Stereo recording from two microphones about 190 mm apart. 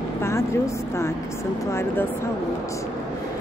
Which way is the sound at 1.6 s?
15° left (ahead or behind).